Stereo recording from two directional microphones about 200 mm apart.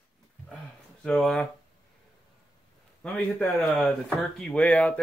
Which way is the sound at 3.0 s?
5° left (ahead or behind).